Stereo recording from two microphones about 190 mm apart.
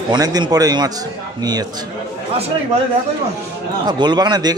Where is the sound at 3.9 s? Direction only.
20° right (ahead or behind).